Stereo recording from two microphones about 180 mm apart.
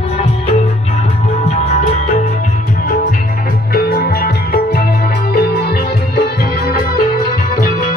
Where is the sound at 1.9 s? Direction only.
40° left (ahead or behind).